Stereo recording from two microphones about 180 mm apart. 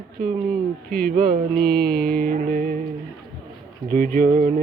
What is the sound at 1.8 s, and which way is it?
Music, 55° right (ahead or behind).